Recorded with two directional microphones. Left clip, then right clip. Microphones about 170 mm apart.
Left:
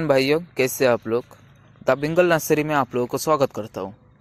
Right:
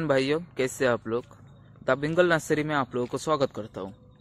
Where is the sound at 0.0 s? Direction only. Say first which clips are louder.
Left 6 dB; 30° left (ahead or behind).